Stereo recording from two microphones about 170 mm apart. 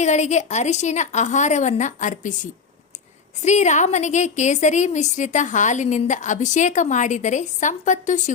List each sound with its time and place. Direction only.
0.0 s a woman's voice: 40° left (ahead or behind)